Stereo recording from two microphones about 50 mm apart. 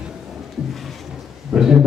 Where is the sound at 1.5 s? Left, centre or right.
Centre.